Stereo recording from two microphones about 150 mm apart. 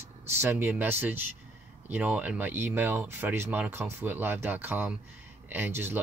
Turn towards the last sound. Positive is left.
turn(degrees=-15)  # may be behind; listen again after turning